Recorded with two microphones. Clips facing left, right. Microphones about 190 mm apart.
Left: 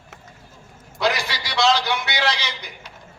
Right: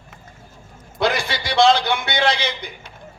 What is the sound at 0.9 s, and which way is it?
A man's voice, 55° right (ahead or behind).